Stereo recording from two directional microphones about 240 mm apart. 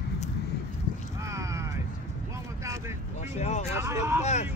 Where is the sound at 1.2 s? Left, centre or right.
Centre.